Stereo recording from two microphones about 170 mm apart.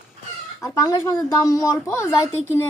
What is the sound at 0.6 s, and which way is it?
A woman's voice, 20° left (ahead or behind).